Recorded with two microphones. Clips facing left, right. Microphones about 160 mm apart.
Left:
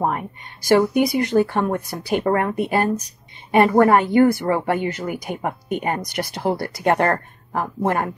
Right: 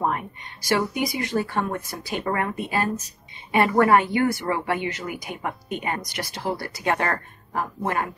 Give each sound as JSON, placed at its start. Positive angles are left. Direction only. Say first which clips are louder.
{"t": 0.7, "sound": "speech", "louder": "left 8 dB", "side_deg": 55}
{"t": 3.5, "sound": "speech", "louder": "left 4 dB", "side_deg": 45}